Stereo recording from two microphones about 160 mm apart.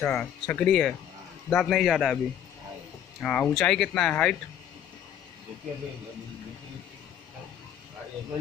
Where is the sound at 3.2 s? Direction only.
5° left (ahead or behind).